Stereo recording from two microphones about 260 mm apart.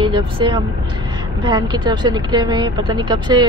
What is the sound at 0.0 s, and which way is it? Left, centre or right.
Speech, centre.